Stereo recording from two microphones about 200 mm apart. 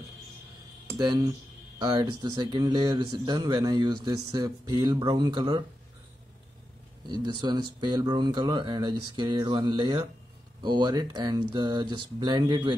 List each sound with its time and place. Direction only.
0.9 s speech: 20° right (ahead or behind)
7.1 s speech: 20° right (ahead or behind)